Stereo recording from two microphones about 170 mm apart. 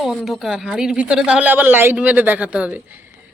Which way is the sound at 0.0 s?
Centre (ahead or behind).